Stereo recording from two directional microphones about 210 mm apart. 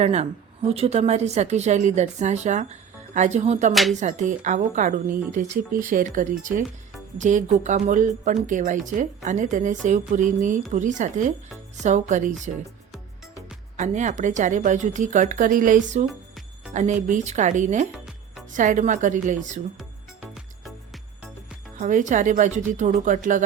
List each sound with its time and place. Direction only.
0.0 s a woman's voice: 30° right (ahead or behind)
3.7 s speech: centre (ahead or behind)
4.2 s a woman's voice: 35° right (ahead or behind)
13.7 s a woman's voice: 35° right (ahead or behind)
16.0 s music: centre (ahead or behind)
16.7 s a woman's voice: 35° right (ahead or behind)
17.9 s music: centre (ahead or behind)
18.5 s a woman's voice: 35° right (ahead or behind)
20.7 s music: centre (ahead or behind)
21.8 s a woman's voice: 35° right (ahead or behind)